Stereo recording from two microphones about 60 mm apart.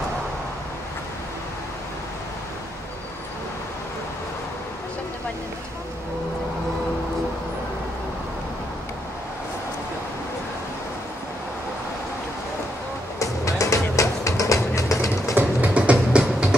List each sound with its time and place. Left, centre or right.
13.2 s music: left
15.3 s music: right